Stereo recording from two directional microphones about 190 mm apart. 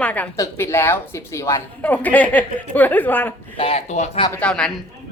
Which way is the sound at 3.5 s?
30° left (ahead or behind).